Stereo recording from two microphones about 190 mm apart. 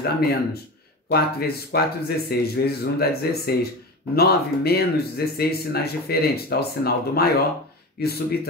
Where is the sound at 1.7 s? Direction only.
55° left (ahead or behind).